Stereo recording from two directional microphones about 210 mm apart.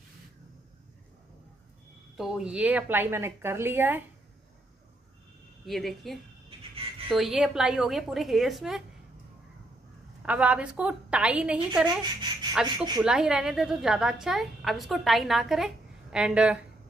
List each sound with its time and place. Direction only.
2.1 s speech: 5° right (ahead or behind)
5.7 s a woman's voice: centre (ahead or behind)
10.2 s a woman's voice: 5° right (ahead or behind)
12.0 s speech: 20° right (ahead or behind)
13.0 s a woman's voice: 5° right (ahead or behind)